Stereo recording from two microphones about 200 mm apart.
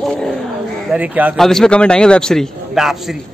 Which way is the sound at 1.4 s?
Centre (ahead or behind).